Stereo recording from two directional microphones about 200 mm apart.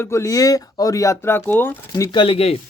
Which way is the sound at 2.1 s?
25° left (ahead or behind).